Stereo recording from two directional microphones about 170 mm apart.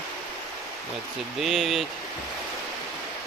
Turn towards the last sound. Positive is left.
turn(degrees=0)  # may be behind; listen again after turning